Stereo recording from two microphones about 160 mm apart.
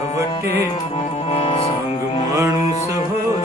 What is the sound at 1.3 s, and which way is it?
Music, 35° left (ahead or behind).